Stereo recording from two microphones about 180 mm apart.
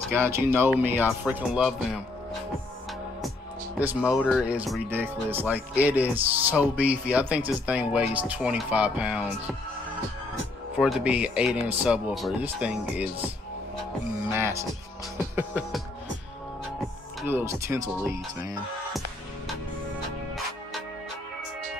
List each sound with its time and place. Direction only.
0.1 s speech: 15° right (ahead or behind)
3.8 s speech: 5° right (ahead or behind)
10.8 s speech: 5° right (ahead or behind)
14.3 s speech: 15° right (ahead or behind)
17.3 s speech: 15° right (ahead or behind)